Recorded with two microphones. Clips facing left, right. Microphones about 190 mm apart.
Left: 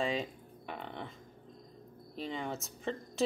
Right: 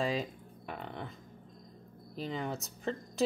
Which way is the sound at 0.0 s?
Centre (ahead or behind).